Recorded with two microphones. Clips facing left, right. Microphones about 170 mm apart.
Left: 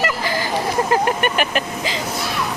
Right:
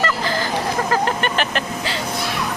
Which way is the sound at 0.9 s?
10° left (ahead or behind).